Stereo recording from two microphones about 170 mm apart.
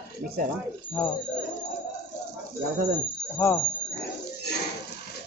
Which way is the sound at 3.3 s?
15° left (ahead or behind).